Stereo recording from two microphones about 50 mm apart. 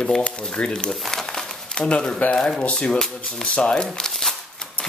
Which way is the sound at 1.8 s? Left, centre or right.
Centre.